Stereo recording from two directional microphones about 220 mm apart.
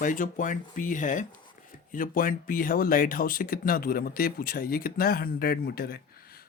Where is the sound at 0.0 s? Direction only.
35° left (ahead or behind).